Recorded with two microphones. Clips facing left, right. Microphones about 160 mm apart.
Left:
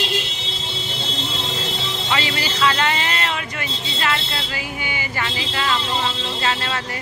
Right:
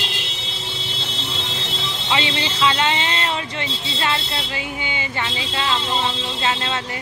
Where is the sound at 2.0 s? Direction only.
25° right (ahead or behind).